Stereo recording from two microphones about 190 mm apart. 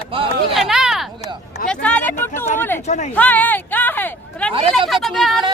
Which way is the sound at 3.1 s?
10° left (ahead or behind).